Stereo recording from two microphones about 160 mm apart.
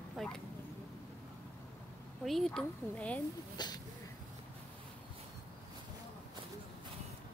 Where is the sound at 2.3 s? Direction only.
Centre (ahead or behind).